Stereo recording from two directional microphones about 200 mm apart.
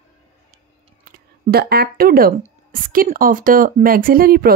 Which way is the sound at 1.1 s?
50° right (ahead or behind).